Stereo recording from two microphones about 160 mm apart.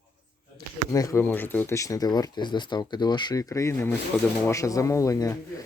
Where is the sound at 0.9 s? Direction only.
20° left (ahead or behind).